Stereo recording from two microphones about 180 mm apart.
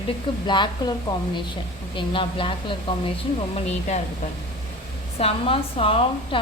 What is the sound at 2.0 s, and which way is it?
A woman's voice, 30° left (ahead or behind).